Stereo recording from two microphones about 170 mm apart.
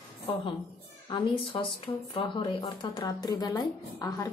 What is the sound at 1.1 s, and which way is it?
Speech, 30° left (ahead or behind).